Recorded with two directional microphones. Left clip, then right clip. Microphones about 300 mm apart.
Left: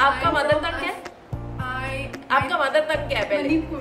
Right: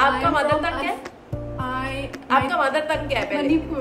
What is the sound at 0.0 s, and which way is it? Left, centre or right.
Music, centre.